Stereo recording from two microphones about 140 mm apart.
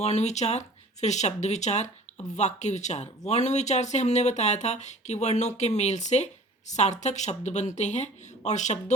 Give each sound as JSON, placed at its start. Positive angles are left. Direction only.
{"t": 0.0, "sound": "speech", "side_deg": 55}